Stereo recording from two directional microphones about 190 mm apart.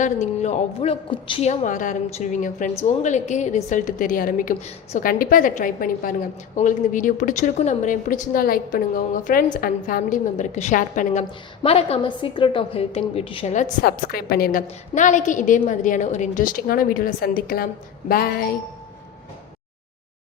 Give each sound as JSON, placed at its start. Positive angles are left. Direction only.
{"t": 0.0, "sound": "a woman's voice", "side_deg": 40}